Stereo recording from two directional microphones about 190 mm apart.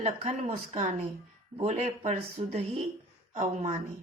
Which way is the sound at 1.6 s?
35° right (ahead or behind).